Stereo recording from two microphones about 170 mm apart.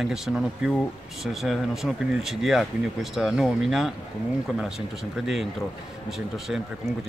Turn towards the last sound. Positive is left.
turn(degrees=0)  # may be behind; listen again after turning